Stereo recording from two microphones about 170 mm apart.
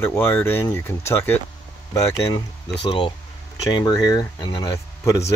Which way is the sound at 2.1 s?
35° left (ahead or behind).